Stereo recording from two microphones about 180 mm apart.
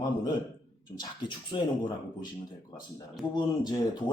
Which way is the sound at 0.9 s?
25° left (ahead or behind).